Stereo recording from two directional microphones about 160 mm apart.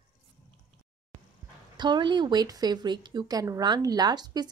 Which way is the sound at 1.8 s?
30° right (ahead or behind).